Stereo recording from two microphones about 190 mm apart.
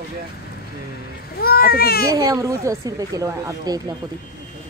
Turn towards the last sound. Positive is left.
turn(degrees=-20)  # may be behind; listen again after turning